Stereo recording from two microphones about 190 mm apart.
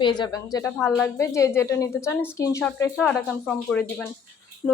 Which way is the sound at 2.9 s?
Centre (ahead or behind).